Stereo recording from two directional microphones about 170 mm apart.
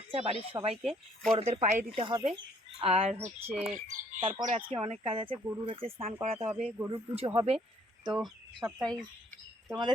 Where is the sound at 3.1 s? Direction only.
10° right (ahead or behind).